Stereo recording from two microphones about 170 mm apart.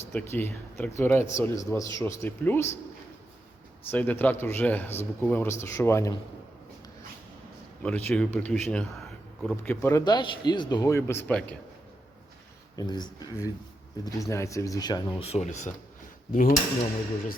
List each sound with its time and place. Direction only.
0.0 s a man's voice: 15° left (ahead or behind)
3.9 s a man's voice: 10° left (ahead or behind)
7.8 s speech: 10° left (ahead or behind)
9.8 s speech: 20° left (ahead or behind)
12.7 s speech: 25° left (ahead or behind)
15.2 s speech: 40° left (ahead or behind)
16.3 s speech: 55° left (ahead or behind)